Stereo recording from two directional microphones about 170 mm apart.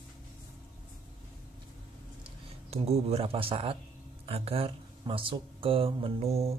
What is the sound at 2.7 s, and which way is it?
Speech, 35° right (ahead or behind).